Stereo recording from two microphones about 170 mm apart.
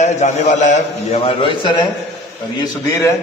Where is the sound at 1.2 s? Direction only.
30° left (ahead or behind).